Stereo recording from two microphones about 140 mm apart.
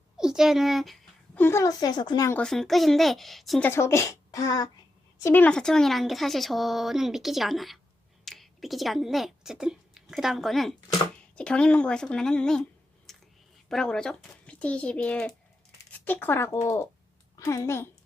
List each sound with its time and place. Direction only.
0.2 s speech: 5° right (ahead or behind)
1.4 s speech: 20° left (ahead or behind)
2.3 s a woman's voice: 5° left (ahead or behind)
3.6 s speech: 20° left (ahead or behind)
5.2 s a woman's voice: 15° left (ahead or behind)
13.1 s clicking: centre (ahead or behind)
13.7 s a woman's voice: 5° left (ahead or behind); by 17.8 s 20° left (ahead or behind)